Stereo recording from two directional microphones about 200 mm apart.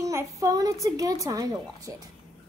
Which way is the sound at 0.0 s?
15° right (ahead or behind).